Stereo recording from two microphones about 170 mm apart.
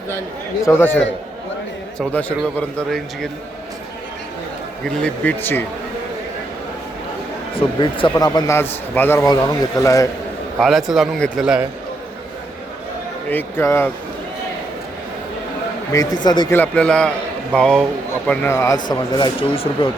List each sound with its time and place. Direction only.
0.6 s a man's voice: 15° left (ahead or behind)
4.9 s speech: 10° left (ahead or behind)
7.5 s a man's voice: 30° left (ahead or behind)
10.6 s a man's voice: centre (ahead or behind)
13.3 s speech: 15° left (ahead or behind)
16.2 s a man's voice: 25° left (ahead or behind)
16.5 s a man's voice: 10° left (ahead or behind); by 19.9 s 30° left (ahead or behind)